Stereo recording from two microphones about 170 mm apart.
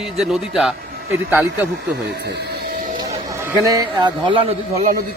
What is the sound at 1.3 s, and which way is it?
Speech, 10° right (ahead or behind).